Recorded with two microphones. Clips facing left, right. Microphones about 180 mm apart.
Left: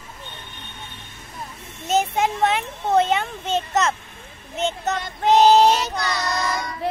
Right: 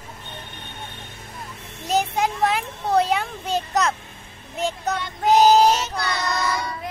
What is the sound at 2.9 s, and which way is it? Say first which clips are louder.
A child's voice: left 1 dB; centre (ahead or behind).